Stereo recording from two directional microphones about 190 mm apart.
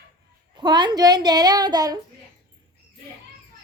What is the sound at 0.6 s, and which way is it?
Speech, 20° right (ahead or behind).